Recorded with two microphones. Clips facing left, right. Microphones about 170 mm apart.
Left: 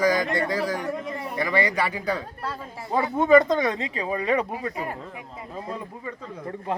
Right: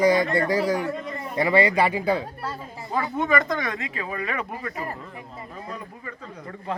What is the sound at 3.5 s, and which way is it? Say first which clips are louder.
Speech: left 4 dB; 25° left (ahead or behind).